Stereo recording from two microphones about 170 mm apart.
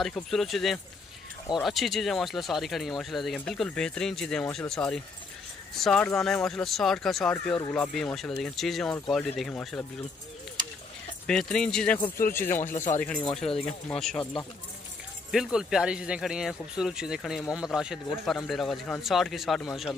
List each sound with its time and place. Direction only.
0.0 s speech: centre (ahead or behind)
11.2 s speech: 5° left (ahead or behind)
12.7 s speech: 45° left (ahead or behind)
13.7 s speech: 5° left (ahead or behind)
15.3 s speech: 5° right (ahead or behind)